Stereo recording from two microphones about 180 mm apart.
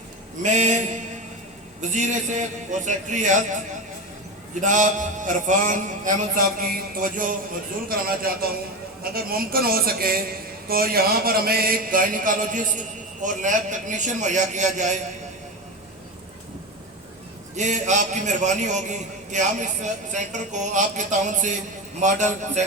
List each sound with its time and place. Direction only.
0.4 s a man's voice: 40° right (ahead or behind)
4.6 s a man's voice: 45° right (ahead or behind)
17.6 s a man's voice: 40° right (ahead or behind)